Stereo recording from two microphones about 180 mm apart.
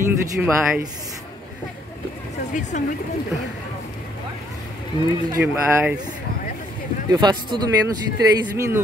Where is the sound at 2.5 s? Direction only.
45° left (ahead or behind).